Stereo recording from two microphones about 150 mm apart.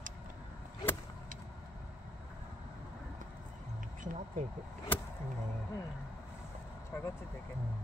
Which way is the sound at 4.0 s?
60° right (ahead or behind).